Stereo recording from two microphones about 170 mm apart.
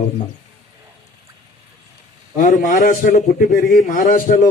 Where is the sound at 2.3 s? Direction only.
55° left (ahead or behind).